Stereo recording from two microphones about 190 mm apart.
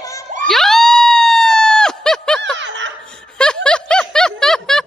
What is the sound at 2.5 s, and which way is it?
Laughter, 75° right (ahead or behind).